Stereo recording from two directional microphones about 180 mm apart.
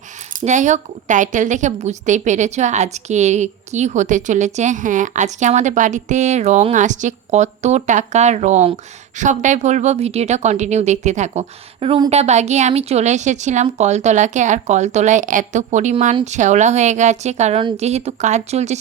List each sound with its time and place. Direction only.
0.3 s a woman's voice: 40° right (ahead or behind)